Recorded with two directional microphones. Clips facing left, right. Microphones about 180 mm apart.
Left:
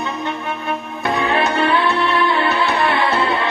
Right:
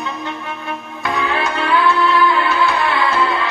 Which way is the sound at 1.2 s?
25° left (ahead or behind).